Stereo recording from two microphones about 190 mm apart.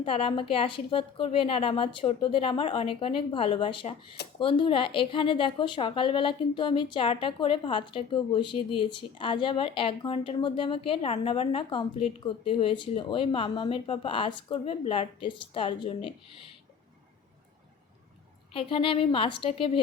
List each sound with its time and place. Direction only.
0.0 s a woman's voice: 30° left (ahead or behind)
18.5 s a woman's voice: 30° left (ahead or behind)